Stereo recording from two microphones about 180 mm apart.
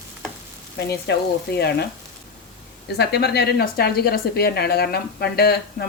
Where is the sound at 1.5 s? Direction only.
65° left (ahead or behind).